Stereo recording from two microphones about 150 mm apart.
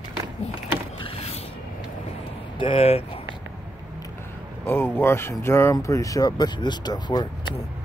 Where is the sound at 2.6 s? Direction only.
35° left (ahead or behind).